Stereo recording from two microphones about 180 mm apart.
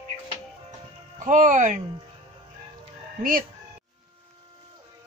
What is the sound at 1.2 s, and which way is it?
Speech, 45° right (ahead or behind).